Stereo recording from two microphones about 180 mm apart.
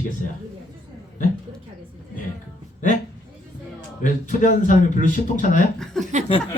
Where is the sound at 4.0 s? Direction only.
45° left (ahead or behind).